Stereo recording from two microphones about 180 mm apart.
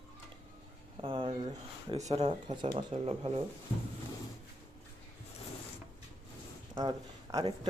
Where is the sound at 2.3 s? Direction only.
25° right (ahead or behind).